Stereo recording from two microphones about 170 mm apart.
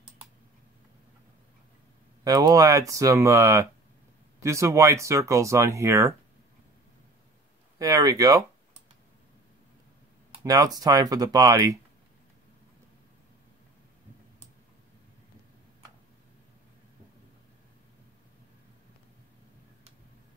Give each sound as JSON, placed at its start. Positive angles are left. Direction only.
{"t": 2.2, "sound": "speech", "side_deg": -20}
{"t": 7.8, "sound": "speech", "side_deg": -20}
{"t": 10.4, "sound": "speech", "side_deg": -20}